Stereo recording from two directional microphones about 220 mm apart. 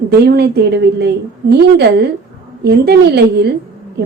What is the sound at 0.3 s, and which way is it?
A woman's voice, 50° right (ahead or behind).